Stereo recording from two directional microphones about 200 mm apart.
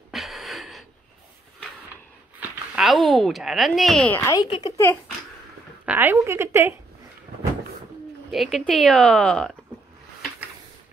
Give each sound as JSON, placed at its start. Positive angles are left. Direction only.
{"t": 0.1, "sound": "a sound", "side_deg": 0}
{"t": 2.7, "sound": "a woman's voice", "side_deg": 0}
{"t": 4.5, "sound": "speech", "side_deg": 25}
{"t": 5.9, "sound": "a woman's voice", "side_deg": -10}
{"t": 8.3, "sound": "a woman's voice", "side_deg": 0}